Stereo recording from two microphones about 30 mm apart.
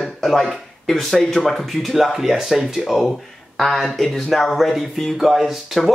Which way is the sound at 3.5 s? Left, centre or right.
Centre.